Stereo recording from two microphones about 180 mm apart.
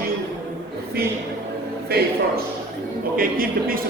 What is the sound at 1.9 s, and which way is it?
Speech, 60° right (ahead or behind).